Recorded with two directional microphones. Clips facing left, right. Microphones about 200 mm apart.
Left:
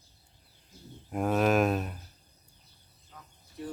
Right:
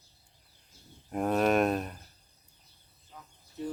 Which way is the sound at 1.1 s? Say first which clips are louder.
Even; centre (ahead or behind).